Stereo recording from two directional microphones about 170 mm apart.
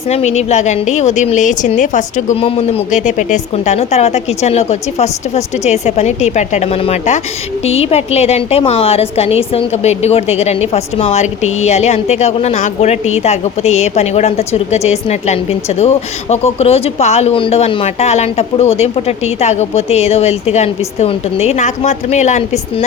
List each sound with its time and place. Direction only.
0.1 s a woman's voice: 40° left (ahead or behind)